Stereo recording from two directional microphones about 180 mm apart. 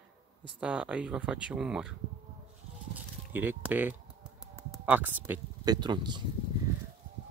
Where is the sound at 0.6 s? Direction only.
5° right (ahead or behind).